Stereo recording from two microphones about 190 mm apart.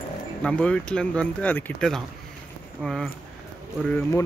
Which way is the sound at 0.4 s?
5° left (ahead or behind).